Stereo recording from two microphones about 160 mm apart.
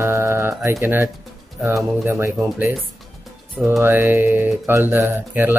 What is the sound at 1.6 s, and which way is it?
Speech, 20° right (ahead or behind).